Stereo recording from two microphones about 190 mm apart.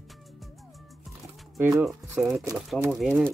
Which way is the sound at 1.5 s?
15° right (ahead or behind).